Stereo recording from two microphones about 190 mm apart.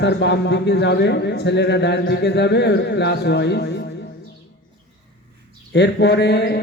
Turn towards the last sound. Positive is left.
turn(degrees=65)  # may be behind; listen again after turning